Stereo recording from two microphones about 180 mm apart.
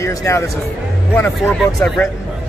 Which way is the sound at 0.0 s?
15° left (ahead or behind).